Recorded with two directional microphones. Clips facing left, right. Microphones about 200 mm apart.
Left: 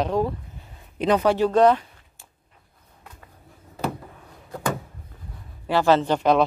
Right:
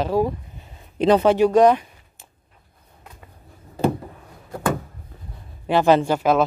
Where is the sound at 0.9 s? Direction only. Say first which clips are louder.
Right 4 dB; 30° right (ahead or behind).